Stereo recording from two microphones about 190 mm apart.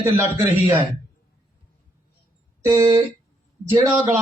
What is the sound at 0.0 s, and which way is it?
Speech, 10° right (ahead or behind).